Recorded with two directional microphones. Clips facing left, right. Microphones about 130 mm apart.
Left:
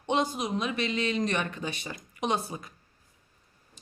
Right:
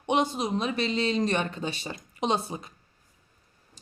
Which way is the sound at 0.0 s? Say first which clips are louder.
Right 2 dB; 20° right (ahead or behind).